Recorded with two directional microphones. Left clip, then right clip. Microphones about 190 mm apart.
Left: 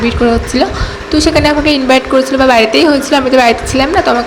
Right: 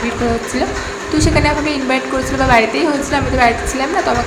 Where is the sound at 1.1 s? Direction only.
25° left (ahead or behind).